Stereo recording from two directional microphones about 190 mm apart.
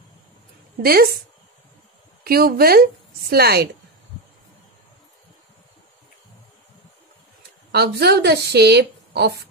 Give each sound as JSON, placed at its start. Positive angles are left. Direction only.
{"t": 0.8, "sound": "a woman's voice", "side_deg": -50}
{"t": 2.2, "sound": "a woman's voice", "side_deg": -50}
{"t": 7.7, "sound": "a woman's voice", "side_deg": -60}